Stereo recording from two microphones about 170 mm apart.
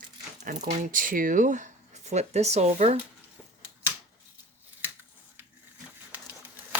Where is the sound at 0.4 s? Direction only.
50° right (ahead or behind).